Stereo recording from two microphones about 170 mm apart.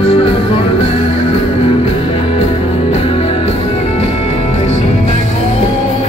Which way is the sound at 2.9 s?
35° left (ahead or behind).